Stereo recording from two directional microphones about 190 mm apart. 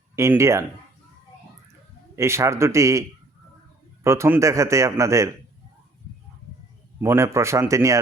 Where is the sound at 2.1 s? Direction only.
15° right (ahead or behind).